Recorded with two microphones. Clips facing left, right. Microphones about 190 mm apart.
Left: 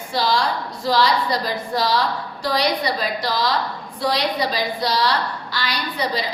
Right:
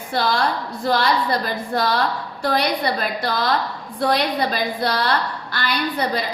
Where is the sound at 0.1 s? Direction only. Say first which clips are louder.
Even; 55° right (ahead or behind).